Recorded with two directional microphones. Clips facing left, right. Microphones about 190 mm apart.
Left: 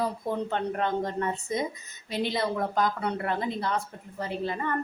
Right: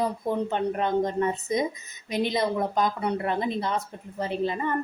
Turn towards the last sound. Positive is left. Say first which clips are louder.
# right 3 dB
turn(degrees=-20)  # may be behind; listen again after turning